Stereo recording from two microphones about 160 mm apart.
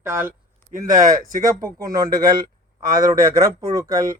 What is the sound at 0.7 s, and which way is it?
Speech, 55° right (ahead or behind).